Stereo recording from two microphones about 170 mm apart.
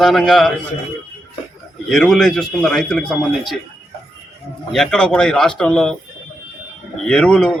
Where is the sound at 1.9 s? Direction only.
Centre (ahead or behind).